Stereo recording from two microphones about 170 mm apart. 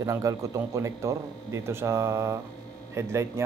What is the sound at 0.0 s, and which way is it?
Speech, 20° right (ahead or behind).